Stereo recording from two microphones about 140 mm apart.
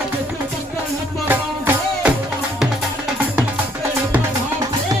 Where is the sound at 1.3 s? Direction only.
10° right (ahead or behind).